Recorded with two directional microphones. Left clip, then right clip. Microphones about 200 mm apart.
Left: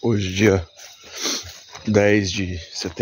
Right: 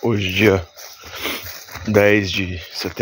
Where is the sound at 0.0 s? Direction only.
10° left (ahead or behind).